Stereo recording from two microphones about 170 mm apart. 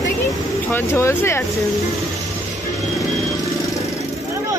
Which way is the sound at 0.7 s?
15° left (ahead or behind).